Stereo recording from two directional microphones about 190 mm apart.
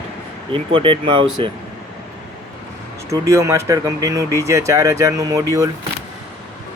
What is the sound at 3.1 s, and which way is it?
Speech, 15° right (ahead or behind).